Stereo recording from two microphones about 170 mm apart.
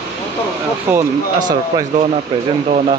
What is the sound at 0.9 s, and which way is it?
Speech, 15° right (ahead or behind).